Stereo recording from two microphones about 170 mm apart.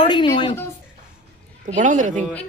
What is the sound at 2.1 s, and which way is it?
Speech, 10° left (ahead or behind).